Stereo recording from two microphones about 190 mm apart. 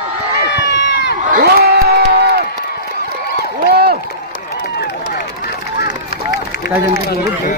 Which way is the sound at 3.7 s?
55° right (ahead or behind).